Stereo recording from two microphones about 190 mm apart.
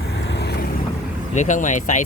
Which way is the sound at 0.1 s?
65° left (ahead or behind).